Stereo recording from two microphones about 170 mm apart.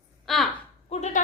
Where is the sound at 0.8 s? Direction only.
40° left (ahead or behind).